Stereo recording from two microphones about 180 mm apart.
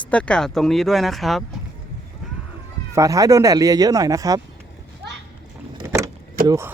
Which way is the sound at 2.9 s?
20° right (ahead or behind).